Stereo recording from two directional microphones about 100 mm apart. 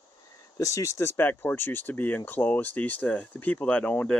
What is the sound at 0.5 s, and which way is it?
Speech, 35° left (ahead or behind).